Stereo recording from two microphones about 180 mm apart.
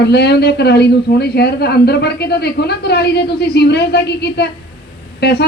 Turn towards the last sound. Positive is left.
turn(degrees=65)  # may be behind; listen again after turning